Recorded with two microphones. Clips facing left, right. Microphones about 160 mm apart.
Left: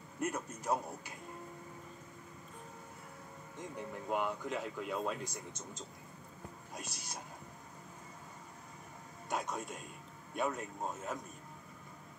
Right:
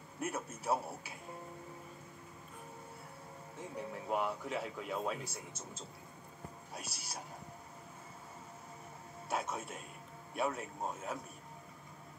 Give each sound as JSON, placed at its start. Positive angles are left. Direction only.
{"t": 0.2, "sound": "a man's voice", "side_deg": -5}
{"t": 3.5, "sound": "speech", "side_deg": -5}
{"t": 9.3, "sound": "speech", "side_deg": -5}